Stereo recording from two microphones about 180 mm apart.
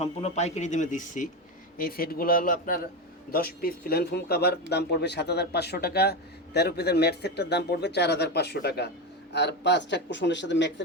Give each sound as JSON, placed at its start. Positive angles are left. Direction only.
{"t": 0.0, "sound": "speech", "side_deg": 35}
{"t": 1.8, "sound": "speech", "side_deg": 55}